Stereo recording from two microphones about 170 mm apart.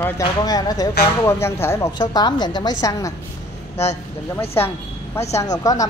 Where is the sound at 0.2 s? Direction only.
20° left (ahead or behind).